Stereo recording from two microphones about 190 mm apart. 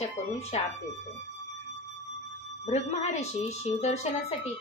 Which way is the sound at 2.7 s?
35° left (ahead or behind).